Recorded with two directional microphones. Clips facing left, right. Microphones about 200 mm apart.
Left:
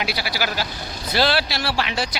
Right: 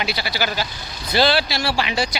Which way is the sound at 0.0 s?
5° left (ahead or behind).